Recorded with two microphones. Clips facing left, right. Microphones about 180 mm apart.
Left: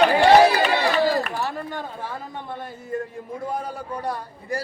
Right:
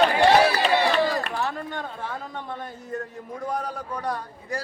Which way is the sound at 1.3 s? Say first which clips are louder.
Left 1 dB; 5° left (ahead or behind).